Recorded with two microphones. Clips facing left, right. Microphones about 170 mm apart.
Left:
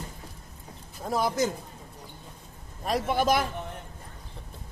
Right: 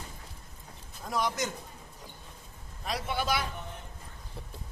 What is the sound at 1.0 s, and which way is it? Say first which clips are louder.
Speech: left 5 dB; 35° left (ahead or behind).